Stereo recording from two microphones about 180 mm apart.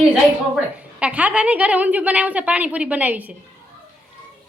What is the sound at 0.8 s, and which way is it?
A woman's voice, 5° right (ahead or behind).